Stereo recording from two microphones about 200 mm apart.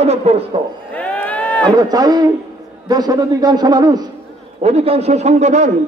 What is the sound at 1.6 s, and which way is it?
A man's voice, 20° right (ahead or behind).